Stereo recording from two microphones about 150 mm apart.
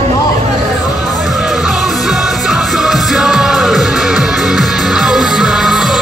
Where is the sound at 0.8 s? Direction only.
25° left (ahead or behind).